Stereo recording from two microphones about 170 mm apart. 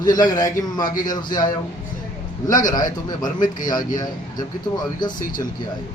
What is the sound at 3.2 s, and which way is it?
Speech, 50° left (ahead or behind).